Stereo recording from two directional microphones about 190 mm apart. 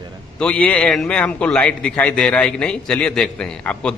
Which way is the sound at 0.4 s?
5° left (ahead or behind).